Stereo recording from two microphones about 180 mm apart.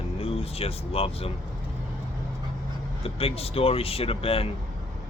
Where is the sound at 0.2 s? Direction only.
30° left (ahead or behind).